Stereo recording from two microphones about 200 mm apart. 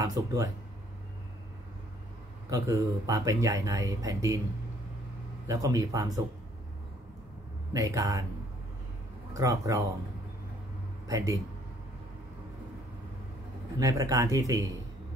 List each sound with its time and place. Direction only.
0.0 s speech: 15° right (ahead or behind)
2.5 s speech: 15° right (ahead or behind)
5.5 s speech: 15° right (ahead or behind)
7.7 s speech: 15° right (ahead or behind)
9.3 s speech: 15° right (ahead or behind)
11.1 s speech: 15° right (ahead or behind)
13.7 s speech: 15° right (ahead or behind)